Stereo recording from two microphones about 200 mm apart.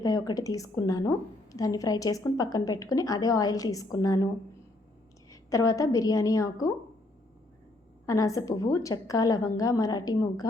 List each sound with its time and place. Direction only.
0.0 s a woman's voice: 20° left (ahead or behind)
5.3 s a woman's voice: 15° left (ahead or behind)
8.0 s a woman's voice: 15° left (ahead or behind)